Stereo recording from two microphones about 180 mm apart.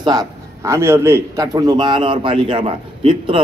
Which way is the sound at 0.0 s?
20° right (ahead or behind).